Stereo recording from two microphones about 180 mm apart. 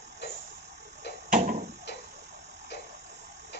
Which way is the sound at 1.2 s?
45° right (ahead or behind).